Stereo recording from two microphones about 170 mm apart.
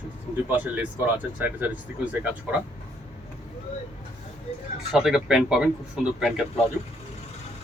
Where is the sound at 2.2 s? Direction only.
10° right (ahead or behind).